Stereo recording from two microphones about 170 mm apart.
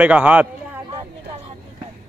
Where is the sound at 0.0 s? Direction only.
10° right (ahead or behind).